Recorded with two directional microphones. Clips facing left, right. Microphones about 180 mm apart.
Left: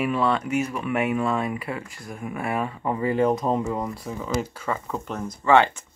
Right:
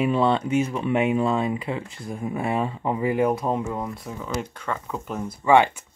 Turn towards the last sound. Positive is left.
turn(degrees=-10)  # may be behind; listen again after turning